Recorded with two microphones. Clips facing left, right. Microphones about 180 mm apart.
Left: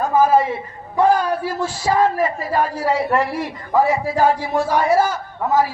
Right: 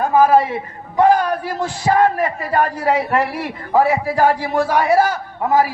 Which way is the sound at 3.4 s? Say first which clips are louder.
Right 1 dB; 60° right (ahead or behind).